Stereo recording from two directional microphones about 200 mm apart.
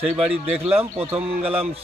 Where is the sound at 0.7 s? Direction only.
30° right (ahead or behind).